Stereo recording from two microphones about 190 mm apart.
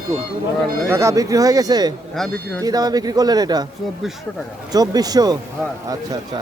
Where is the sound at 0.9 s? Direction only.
15° right (ahead or behind).